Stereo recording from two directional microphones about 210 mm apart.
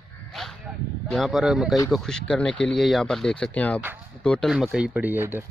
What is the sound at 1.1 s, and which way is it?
Speech, centre (ahead or behind).